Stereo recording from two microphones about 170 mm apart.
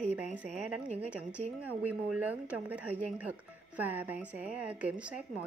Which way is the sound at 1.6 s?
10° right (ahead or behind).